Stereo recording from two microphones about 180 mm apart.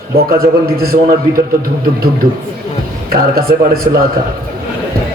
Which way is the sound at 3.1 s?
55° right (ahead or behind).